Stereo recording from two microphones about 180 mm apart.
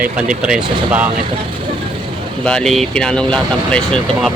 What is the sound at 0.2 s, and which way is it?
Speech, 5° right (ahead or behind).